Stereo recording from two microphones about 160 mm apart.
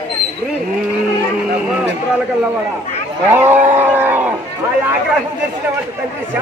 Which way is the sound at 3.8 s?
10° right (ahead or behind).